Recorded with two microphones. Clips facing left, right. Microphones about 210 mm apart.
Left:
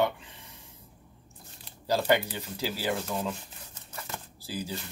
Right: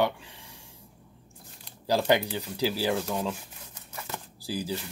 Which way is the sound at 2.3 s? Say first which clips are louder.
Right 5 dB; 15° right (ahead or behind).